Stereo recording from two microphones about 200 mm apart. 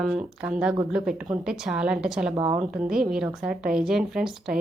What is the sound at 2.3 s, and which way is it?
Speech, 20° right (ahead or behind).